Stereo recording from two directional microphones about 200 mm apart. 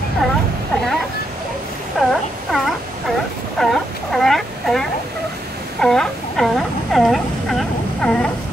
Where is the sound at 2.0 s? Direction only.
Centre (ahead or behind).